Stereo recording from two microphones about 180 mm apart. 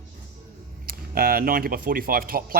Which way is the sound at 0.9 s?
55° right (ahead or behind).